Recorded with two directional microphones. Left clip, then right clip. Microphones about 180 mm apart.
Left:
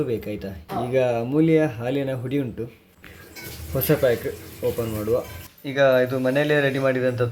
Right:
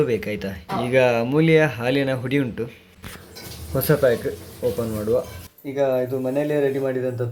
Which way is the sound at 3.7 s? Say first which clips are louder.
Right 2 dB; 5° right (ahead or behind).